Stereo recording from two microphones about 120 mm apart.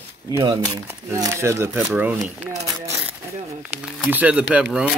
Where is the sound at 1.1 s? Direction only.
25° right (ahead or behind).